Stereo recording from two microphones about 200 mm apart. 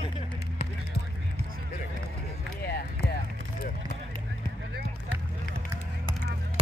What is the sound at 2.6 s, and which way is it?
Run, 50° left (ahead or behind).